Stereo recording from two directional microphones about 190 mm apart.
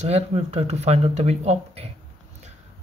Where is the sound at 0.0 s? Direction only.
35° right (ahead or behind).